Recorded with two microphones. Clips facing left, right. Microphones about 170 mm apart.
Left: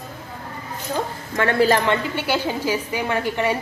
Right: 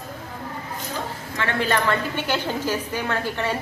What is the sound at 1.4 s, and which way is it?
Speech, 40° left (ahead or behind).